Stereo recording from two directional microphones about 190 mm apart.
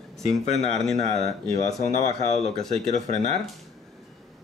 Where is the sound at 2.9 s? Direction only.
40° left (ahead or behind).